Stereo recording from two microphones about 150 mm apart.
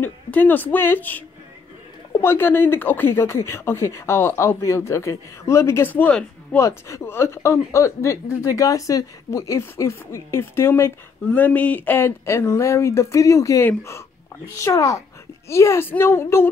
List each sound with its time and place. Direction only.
0.0 s speech: 10° left (ahead or behind)